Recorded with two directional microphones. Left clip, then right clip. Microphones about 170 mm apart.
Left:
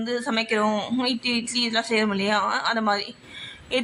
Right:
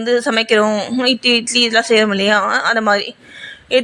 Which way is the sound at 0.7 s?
20° right (ahead or behind).